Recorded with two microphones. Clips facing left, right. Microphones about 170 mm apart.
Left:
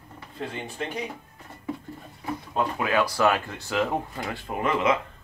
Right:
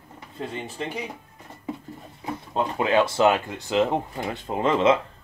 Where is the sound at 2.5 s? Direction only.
25° right (ahead or behind).